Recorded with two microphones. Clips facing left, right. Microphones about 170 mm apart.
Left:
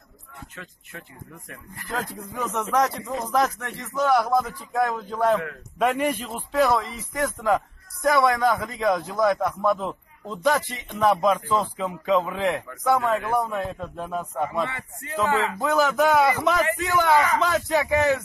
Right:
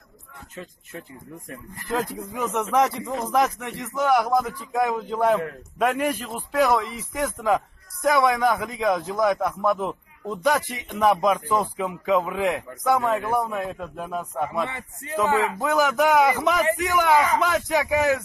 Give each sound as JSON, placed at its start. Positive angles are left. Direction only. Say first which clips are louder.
{"t": 1.9, "sound": "a man's voice", "louder": "right 4 dB", "side_deg": -15}
{"t": 5.8, "sound": "a man's voice", "louder": "even", "side_deg": 0}
{"t": 13.4, "sound": "a man's voice", "louder": "even", "side_deg": -5}